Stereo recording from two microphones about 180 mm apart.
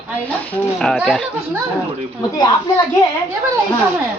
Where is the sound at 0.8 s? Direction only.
Centre (ahead or behind).